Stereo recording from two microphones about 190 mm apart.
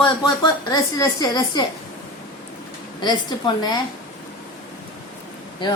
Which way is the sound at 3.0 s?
20° left (ahead or behind).